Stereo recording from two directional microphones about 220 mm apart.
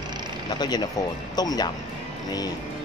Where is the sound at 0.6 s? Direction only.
20° left (ahead or behind).